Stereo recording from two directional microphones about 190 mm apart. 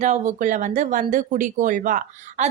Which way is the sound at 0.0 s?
40° right (ahead or behind).